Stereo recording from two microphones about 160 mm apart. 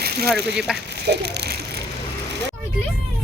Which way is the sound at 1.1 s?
90° right.